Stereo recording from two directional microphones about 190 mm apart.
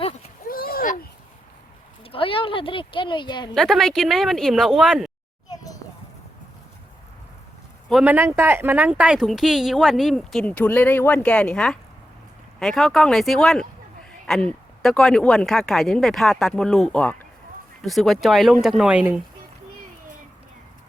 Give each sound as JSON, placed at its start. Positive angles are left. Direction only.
{"t": 0.4, "sound": "a sound", "side_deg": 50}
{"t": 2.1, "sound": "speech", "side_deg": 30}
{"t": 3.5, "sound": "a man's voice", "side_deg": 0}
{"t": 5.5, "sound": "children playing", "side_deg": 20}
{"t": 7.9, "sound": "a man's voice", "side_deg": -5}